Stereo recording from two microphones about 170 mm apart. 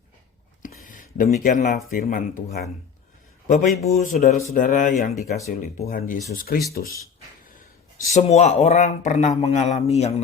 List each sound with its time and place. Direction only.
0.6 s a sound: 50° left (ahead or behind)
1.9 s speech: 55° left (ahead or behind)
3.4 s speech: 45° left (ahead or behind)
8.1 s speech: 40° left (ahead or behind)